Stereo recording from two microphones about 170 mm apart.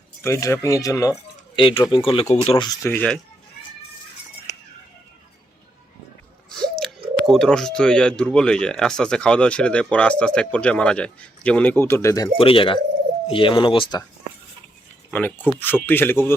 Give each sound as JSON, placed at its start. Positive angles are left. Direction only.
{"t": 0.2, "sound": "speech", "side_deg": 15}
{"t": 1.5, "sound": "speech", "side_deg": 30}
{"t": 2.8, "sound": "speech", "side_deg": 10}
{"t": 6.7, "sound": "speech", "side_deg": 0}
{"t": 12.4, "sound": "speech", "side_deg": 30}
{"t": 15.1, "sound": "speech", "side_deg": 10}